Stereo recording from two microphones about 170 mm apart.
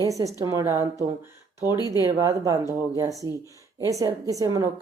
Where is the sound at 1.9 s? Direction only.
20° right (ahead or behind).